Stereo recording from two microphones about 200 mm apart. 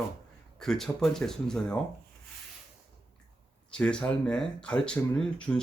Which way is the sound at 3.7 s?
5° left (ahead or behind).